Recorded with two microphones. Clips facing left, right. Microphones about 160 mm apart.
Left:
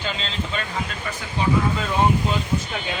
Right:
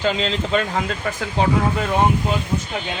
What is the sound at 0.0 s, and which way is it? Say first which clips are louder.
Speech: right 8 dB; 90° right.